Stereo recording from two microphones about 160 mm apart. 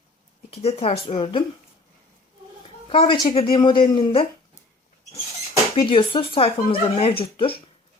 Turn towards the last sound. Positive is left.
turn(degrees=35)  # may be behind; listen again after turning